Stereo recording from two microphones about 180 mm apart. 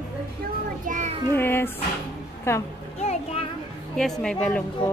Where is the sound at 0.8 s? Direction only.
45° right (ahead or behind).